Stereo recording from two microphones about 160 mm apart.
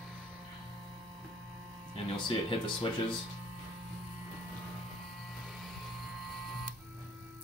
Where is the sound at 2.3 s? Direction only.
30° left (ahead or behind).